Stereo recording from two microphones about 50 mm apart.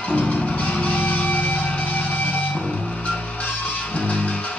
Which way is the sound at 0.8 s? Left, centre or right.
Left.